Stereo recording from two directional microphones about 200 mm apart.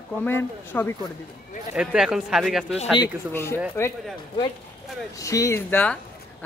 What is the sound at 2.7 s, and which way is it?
Speech, 25° left (ahead or behind).